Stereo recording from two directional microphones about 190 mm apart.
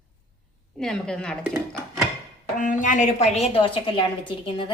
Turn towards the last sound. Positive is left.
turn(degrees=25)  # may be behind; listen again after turning